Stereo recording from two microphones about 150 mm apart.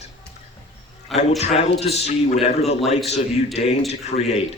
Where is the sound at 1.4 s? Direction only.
45° left (ahead or behind).